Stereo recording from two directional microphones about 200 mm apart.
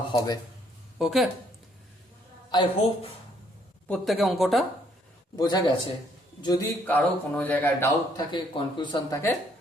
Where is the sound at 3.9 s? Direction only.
Centre (ahead or behind).